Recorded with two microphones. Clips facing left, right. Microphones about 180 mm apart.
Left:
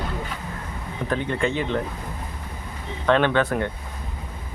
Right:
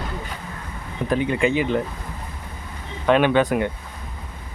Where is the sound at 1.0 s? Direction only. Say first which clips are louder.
Right 4 dB; 10° right (ahead or behind).